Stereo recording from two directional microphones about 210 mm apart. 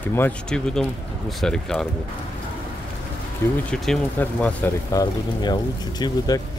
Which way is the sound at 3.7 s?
5° left (ahead or behind).